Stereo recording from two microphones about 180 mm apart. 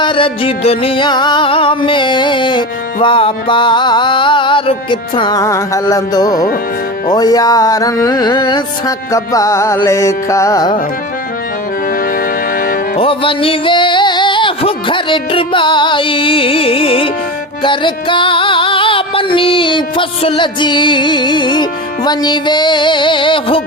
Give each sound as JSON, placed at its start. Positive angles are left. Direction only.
{"t": 0.0, "sound": "music", "side_deg": 30}
{"t": 12.5, "sound": "music", "side_deg": 50}
{"t": 13.0, "sound": "music", "side_deg": 30}